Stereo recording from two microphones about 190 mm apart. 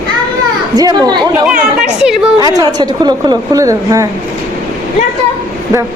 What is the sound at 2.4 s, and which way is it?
Speech, 20° right (ahead or behind).